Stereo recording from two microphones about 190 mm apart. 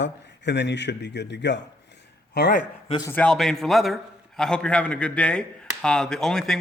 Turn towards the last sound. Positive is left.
turn(degrees=0)  # may be behind; listen again after turning